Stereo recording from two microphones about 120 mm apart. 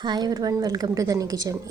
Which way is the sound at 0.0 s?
35° right (ahead or behind).